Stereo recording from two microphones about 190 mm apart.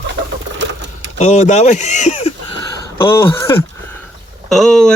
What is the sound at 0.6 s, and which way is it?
Sewing machine, 70° right (ahead or behind).